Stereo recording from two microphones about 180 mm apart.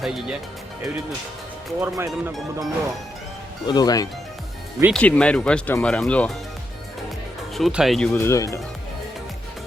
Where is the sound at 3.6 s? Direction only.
20° left (ahead or behind).